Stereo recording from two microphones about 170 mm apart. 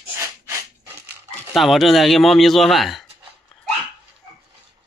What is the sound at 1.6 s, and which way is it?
A man's voice, centre (ahead or behind).